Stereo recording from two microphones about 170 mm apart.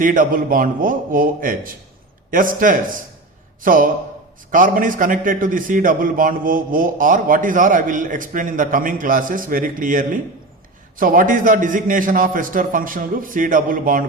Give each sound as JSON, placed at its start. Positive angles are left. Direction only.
{"t": 0.0, "sound": "a man's voice", "side_deg": -55}